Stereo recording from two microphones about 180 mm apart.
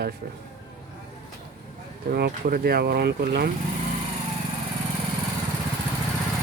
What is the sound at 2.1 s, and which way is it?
Speech, 55° right (ahead or behind).